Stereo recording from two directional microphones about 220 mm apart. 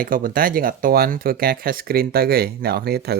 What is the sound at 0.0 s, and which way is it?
Speech, 40° right (ahead or behind).